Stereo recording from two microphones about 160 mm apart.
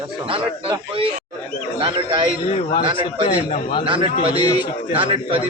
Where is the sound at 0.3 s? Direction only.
35° right (ahead or behind).